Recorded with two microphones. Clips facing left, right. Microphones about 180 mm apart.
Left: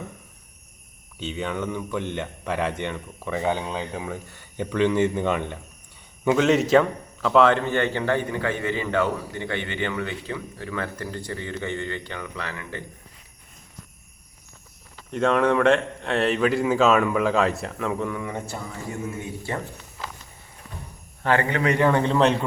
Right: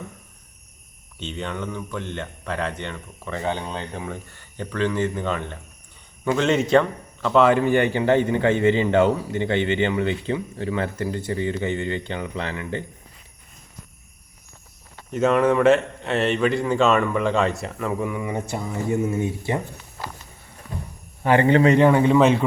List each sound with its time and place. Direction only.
1.2 s speech: 5° left (ahead or behind)
6.2 s a man's voice: 5° left (ahead or behind); by 12.8 s 25° right (ahead or behind)
15.1 s speech: 5° right (ahead or behind)
18.9 s a man's voice: 25° right (ahead or behind)
21.4 s a man's voice: 30° right (ahead or behind)
21.9 s a man's voice: 10° right (ahead or behind)